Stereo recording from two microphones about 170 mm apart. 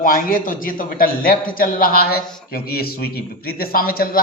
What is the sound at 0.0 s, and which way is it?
A man's voice, 55° left (ahead or behind).